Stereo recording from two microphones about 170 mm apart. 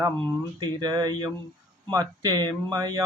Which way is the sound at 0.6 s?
25° right (ahead or behind).